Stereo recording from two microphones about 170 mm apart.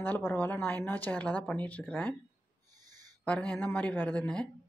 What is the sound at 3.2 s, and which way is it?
Speech, 5° left (ahead or behind).